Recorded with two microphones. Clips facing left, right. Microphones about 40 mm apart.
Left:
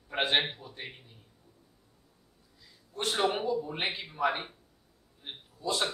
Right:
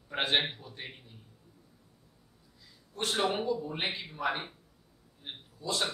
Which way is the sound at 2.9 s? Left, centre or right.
Centre.